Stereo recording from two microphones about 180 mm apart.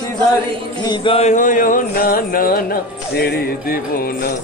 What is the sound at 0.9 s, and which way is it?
Speech, 30° left (ahead or behind).